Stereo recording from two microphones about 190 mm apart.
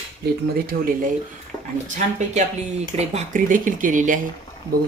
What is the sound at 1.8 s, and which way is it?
Speech, 40° right (ahead or behind).